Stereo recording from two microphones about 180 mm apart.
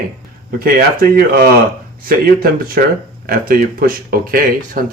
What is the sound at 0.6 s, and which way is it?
Speech, 55° right (ahead or behind).